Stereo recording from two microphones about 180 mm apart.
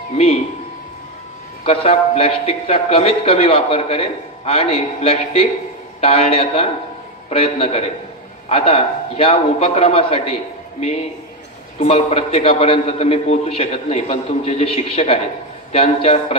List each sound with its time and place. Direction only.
1.7 s speech: 35° left (ahead or behind)
11.8 s speech: 35° left (ahead or behind)